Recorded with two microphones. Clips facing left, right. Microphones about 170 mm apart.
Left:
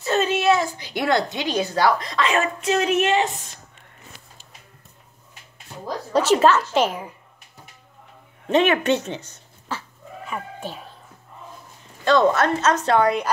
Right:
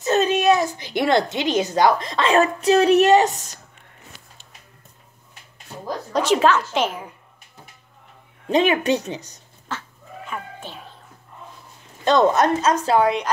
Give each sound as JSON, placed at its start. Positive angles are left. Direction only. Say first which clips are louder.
{"t": 0.0, "sound": "a woman's voice", "louder": "right 2 dB", "side_deg": -20}
{"t": 6.1, "sound": "a woman's voice", "louder": "left 1 dB", "side_deg": 5}
{"t": 8.5, "sound": "a woman's voice", "louder": "even", "side_deg": -10}
{"t": 9.7, "sound": "chicken", "louder": "left 1 dB", "side_deg": 5}
{"t": 10.6, "sound": "speech", "louder": "left 4 dB", "side_deg": 40}
{"t": 12.0, "sound": "a woman's voice", "louder": "right 1 dB", "side_deg": -20}